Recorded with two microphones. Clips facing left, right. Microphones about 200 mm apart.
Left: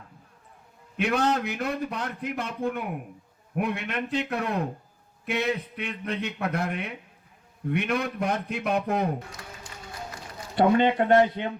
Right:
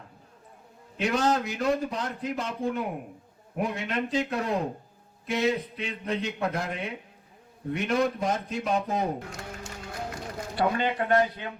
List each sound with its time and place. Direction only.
0.9 s a man's voice: 60° left (ahead or behind)
10.5 s speech: 25° left (ahead or behind)